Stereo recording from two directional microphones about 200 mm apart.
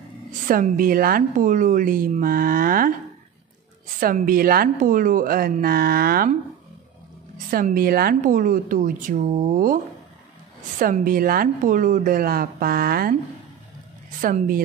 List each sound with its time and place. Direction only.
0.5 s a woman's voice: 45° right (ahead or behind)
4.0 s a woman's voice: 45° right (ahead or behind)
7.5 s a woman's voice: 45° right (ahead or behind)
10.8 s a woman's voice: 45° right (ahead or behind)
14.2 s a woman's voice: 40° right (ahead or behind)